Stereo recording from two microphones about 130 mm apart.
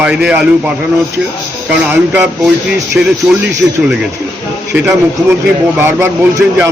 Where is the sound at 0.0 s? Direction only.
5° right (ahead or behind).